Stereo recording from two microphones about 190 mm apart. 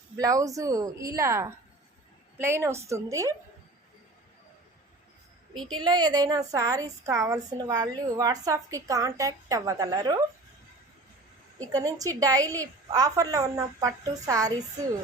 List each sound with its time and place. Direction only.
0.2 s a woman's voice: 15° right (ahead or behind)
5.8 s a woman's voice: 20° right (ahead or behind)
11.7 s a woman's voice: 20° right (ahead or behind)